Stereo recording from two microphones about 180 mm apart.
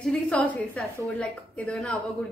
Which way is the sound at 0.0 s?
5° left (ahead or behind).